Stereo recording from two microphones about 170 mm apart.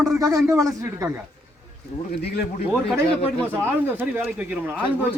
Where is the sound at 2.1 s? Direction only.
70° left (ahead or behind).